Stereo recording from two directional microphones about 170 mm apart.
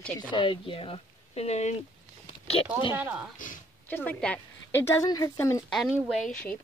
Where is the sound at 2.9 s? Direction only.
10° right (ahead or behind).